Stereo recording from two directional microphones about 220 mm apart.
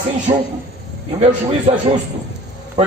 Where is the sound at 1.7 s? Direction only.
25° right (ahead or behind).